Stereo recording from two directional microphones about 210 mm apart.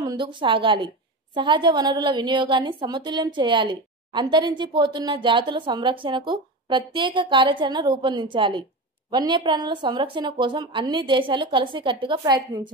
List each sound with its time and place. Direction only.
0.0 s a woman's voice: 20° right (ahead or behind)